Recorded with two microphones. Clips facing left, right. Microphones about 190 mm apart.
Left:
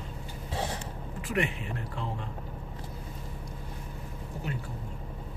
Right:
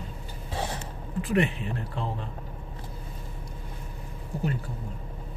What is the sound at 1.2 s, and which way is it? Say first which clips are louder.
Speech: right 5 dB; 30° right (ahead or behind).